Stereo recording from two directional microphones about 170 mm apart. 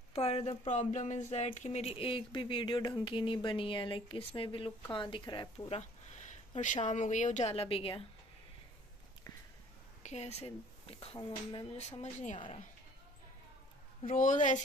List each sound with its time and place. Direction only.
0.1 s a woman's voice: 35° left (ahead or behind)
5.8 s speech: 40° left (ahead or behind)
10.0 s speech: 40° left (ahead or behind)
12.0 s speech: 45° left (ahead or behind)
14.1 s speech: 50° left (ahead or behind)